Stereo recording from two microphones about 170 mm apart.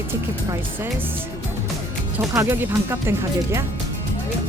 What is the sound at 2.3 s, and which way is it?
Speech, 15° right (ahead or behind).